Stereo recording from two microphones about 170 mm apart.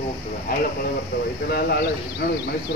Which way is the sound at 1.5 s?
70° left (ahead or behind).